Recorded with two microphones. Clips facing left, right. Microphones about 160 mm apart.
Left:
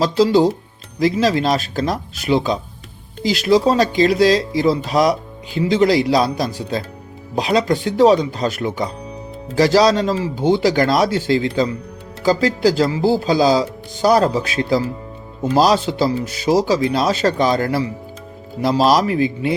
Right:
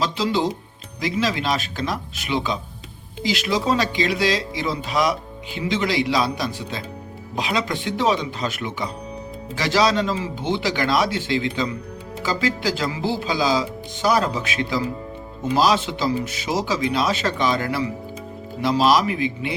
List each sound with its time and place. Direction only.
0.0 s speech: 40° left (ahead or behind)